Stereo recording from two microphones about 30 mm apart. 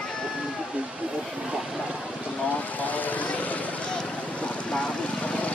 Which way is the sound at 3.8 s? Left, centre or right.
Left.